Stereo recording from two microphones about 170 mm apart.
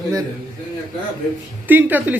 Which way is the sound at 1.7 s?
10° right (ahead or behind).